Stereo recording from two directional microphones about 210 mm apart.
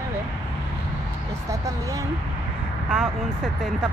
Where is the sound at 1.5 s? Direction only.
15° right (ahead or behind).